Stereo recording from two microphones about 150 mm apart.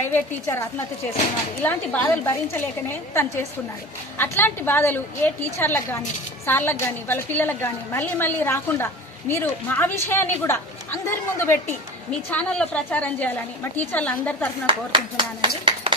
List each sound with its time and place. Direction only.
0.1 s a woman's voice: 15° left (ahead or behind)
14.7 s speech: 35° right (ahead or behind)